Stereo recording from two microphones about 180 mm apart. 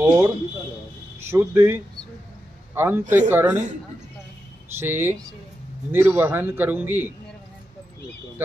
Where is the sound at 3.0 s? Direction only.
45° right (ahead or behind).